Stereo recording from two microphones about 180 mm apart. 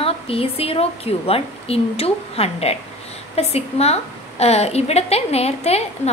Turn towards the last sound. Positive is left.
turn(degrees=35)  # may be behind; listen again after turning